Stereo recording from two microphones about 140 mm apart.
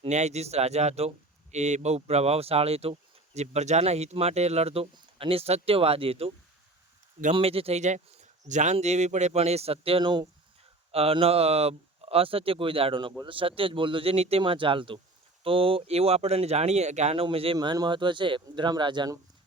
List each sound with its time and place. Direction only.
0.0 s speech: 55° right (ahead or behind)
7.3 s speech: 45° right (ahead or behind)
10.9 s speech: 45° right (ahead or behind)
17.2 s speech: 40° right (ahead or behind)